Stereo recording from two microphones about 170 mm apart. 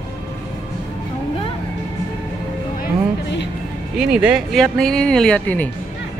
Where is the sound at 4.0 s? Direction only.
5° right (ahead or behind).